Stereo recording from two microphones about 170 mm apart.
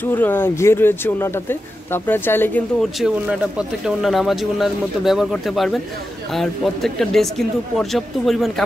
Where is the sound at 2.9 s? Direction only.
5° right (ahead or behind).